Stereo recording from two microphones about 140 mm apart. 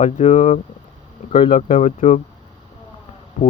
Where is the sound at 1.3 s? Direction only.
50° left (ahead or behind).